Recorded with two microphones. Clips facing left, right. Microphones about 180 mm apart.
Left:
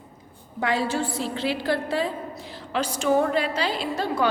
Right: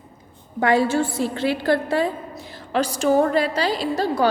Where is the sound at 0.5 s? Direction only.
50° right (ahead or behind).